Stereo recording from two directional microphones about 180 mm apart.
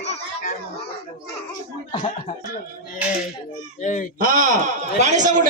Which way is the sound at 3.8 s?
45° left (ahead or behind).